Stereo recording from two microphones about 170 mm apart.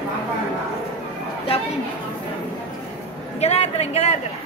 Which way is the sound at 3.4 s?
40° left (ahead or behind).